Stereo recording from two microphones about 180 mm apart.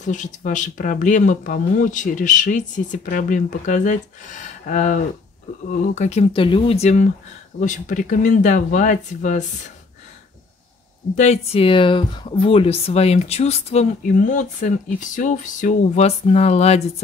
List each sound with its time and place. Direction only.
0.0 s speech: 45° left (ahead or behind)
11.1 s speech: 35° left (ahead or behind)